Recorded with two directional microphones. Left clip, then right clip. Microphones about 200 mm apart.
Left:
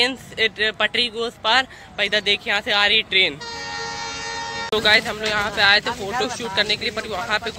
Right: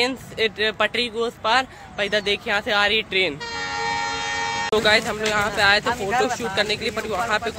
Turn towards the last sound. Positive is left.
turn(degrees=-5)  # may be behind; listen again after turning